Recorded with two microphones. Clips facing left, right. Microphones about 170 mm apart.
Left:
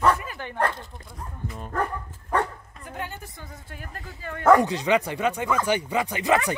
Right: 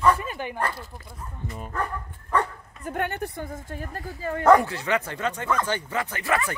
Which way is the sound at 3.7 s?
35° right (ahead or behind).